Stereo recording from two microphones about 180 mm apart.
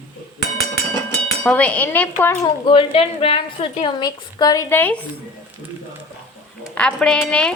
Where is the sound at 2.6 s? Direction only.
30° left (ahead or behind); by 4.9 s 10° left (ahead or behind).